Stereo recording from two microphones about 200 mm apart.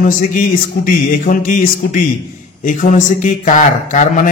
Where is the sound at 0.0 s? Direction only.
40° left (ahead or behind).